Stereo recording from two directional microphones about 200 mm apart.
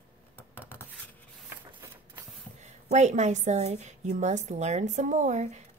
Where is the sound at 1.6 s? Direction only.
20° right (ahead or behind).